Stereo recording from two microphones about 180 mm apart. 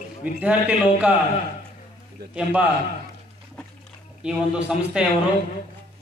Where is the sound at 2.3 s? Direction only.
10° right (ahead or behind).